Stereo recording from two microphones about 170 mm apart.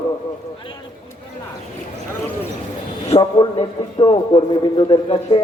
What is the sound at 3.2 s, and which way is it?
A man's voice, 25° left (ahead or behind).